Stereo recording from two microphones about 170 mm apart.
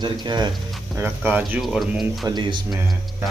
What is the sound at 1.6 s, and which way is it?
Speech, centre (ahead or behind).